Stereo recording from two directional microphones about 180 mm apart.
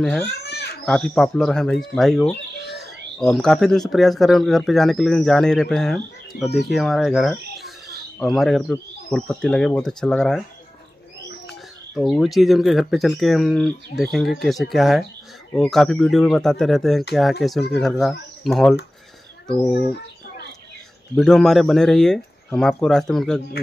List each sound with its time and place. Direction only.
0.0 s speech: 5° left (ahead or behind)
0.3 s a sound: 65° left (ahead or behind)
0.8 s speech: 5° left (ahead or behind)
11.4 s speech: centre (ahead or behind)
21.2 s speech: centre (ahead or behind)